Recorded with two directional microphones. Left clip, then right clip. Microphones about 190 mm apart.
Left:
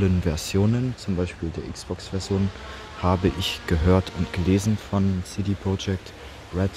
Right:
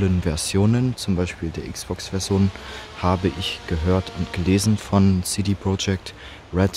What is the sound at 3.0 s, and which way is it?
Speech, centre (ahead or behind).